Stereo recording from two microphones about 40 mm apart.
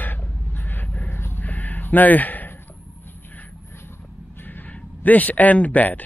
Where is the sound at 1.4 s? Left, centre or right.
Left.